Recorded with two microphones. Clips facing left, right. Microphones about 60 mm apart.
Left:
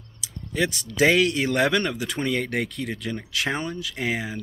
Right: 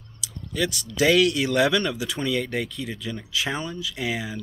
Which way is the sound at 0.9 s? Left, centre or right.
Left.